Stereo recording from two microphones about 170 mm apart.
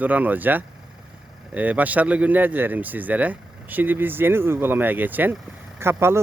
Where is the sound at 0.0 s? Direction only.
10° right (ahead or behind).